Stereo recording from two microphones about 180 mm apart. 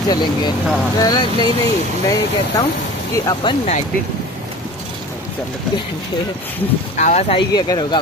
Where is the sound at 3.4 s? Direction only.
25° left (ahead or behind).